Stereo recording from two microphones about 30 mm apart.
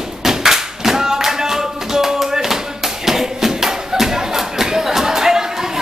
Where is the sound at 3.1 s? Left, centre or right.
Centre.